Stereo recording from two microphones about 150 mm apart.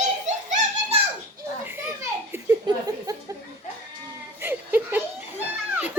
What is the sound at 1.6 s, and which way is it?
Children playing, 15° right (ahead or behind).